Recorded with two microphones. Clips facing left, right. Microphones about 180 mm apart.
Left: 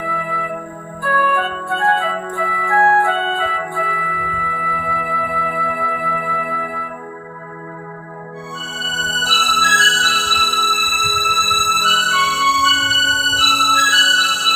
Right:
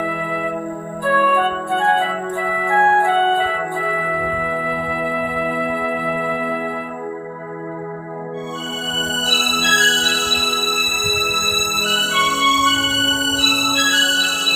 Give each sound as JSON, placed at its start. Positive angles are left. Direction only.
{"t": 1.0, "sound": "flute", "side_deg": -15}
{"t": 8.8, "sound": "music", "side_deg": -20}